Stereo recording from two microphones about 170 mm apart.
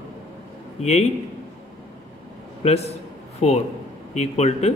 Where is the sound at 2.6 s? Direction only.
40° left (ahead or behind).